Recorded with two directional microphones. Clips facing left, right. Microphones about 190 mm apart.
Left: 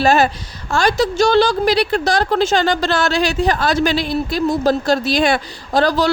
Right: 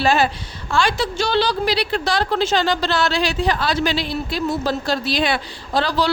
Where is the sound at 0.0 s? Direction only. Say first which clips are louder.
Left 4 dB; 45° left (ahead or behind).